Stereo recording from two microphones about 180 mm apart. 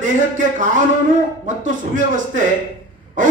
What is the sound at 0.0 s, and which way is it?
Speech, 45° right (ahead or behind).